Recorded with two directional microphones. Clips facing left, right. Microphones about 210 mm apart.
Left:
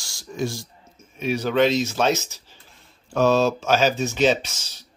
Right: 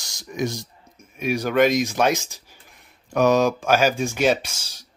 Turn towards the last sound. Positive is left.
turn(degrees=-10)  # may be behind; listen again after turning